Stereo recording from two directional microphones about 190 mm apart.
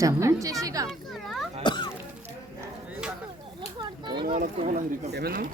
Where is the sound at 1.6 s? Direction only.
25° left (ahead or behind).